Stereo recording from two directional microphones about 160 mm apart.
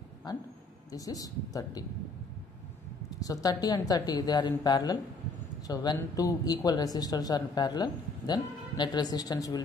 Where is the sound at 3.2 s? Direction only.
25° left (ahead or behind).